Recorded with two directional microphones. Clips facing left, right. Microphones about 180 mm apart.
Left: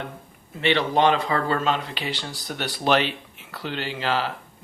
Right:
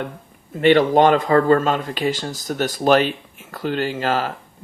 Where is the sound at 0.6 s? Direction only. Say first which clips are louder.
Right 7 dB; 50° right (ahead or behind).